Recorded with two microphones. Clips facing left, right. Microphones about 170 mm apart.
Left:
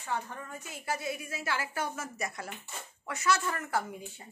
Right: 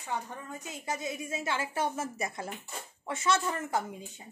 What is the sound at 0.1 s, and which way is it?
A woman's voice, 15° right (ahead or behind).